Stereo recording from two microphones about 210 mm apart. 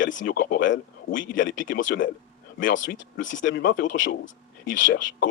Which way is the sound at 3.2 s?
65° left (ahead or behind).